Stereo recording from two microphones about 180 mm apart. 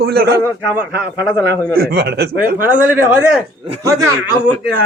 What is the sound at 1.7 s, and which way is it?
Speech, 60° right (ahead or behind).